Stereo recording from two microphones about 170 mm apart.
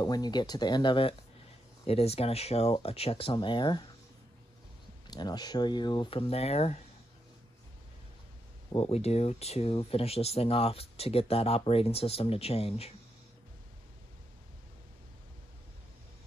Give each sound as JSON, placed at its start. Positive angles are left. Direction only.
{"t": 0.0, "sound": "speech", "side_deg": 25}
{"t": 5.0, "sound": "speech", "side_deg": 25}
{"t": 8.7, "sound": "speech", "side_deg": 35}